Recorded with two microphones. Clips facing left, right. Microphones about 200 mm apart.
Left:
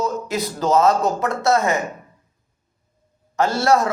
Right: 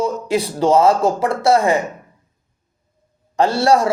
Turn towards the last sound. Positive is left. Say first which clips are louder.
# right 3 dB
turn(degrees=-30)  # may be behind; listen again after turning